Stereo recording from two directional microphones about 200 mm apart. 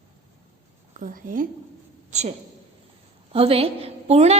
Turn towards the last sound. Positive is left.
turn(degrees=-30)  # may be behind; listen again after turning